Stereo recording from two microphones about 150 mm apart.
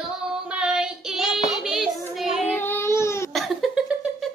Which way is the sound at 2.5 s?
15° left (ahead or behind).